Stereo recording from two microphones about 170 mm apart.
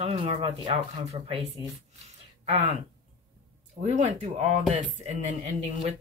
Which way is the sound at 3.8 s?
45° right (ahead or behind).